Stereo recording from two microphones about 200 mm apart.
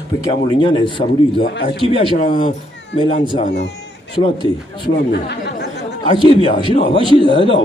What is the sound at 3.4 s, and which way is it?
Speech, 55° left (ahead or behind).